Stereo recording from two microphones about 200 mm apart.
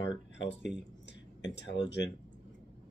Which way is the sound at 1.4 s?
60° left (ahead or behind).